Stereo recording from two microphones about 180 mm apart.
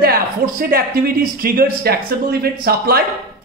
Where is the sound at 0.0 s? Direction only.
55° right (ahead or behind).